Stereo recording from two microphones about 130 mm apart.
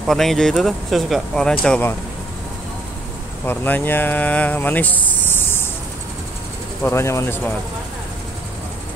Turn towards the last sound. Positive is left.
turn(degrees=20)  # may be behind; listen again after turning